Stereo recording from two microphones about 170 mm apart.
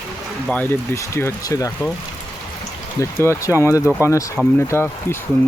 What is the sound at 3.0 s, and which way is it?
Speech, 15° left (ahead or behind).